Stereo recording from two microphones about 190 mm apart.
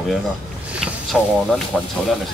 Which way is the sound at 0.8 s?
Centre (ahead or behind).